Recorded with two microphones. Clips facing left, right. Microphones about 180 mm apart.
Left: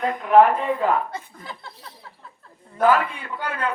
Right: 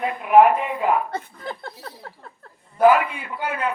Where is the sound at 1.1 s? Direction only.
55° right (ahead or behind).